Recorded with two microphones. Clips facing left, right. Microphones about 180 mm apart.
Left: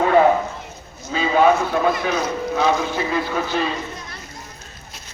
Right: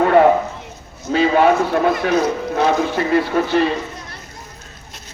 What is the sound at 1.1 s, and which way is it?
Speech, 65° right (ahead or behind).